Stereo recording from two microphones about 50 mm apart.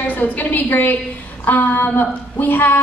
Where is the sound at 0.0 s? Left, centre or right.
Left.